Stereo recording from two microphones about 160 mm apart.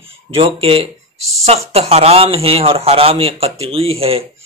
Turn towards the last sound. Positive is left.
turn(degrees=-35)  # may be behind; listen again after turning